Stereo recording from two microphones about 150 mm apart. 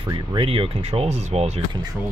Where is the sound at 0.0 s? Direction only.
30° right (ahead or behind).